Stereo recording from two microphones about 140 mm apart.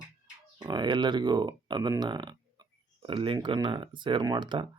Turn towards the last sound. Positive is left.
turn(degrees=-35)  # may be behind; listen again after turning